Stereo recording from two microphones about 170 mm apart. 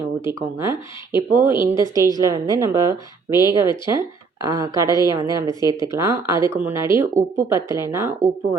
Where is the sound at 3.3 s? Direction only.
25° left (ahead or behind).